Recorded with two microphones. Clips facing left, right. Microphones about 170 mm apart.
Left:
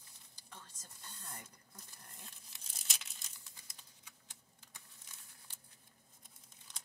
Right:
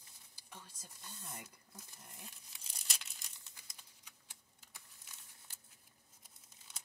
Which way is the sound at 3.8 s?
10° right (ahead or behind).